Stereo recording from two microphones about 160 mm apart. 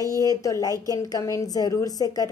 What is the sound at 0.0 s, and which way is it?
Speech, 20° left (ahead or behind).